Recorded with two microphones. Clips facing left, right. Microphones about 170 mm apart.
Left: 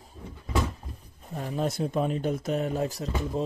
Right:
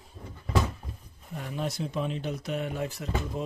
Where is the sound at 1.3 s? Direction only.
40° left (ahead or behind).